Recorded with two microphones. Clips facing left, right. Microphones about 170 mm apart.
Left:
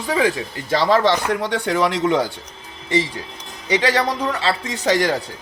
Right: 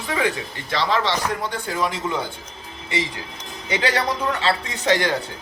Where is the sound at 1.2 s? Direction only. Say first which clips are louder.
Left 5 dB; 70° left (ahead or behind).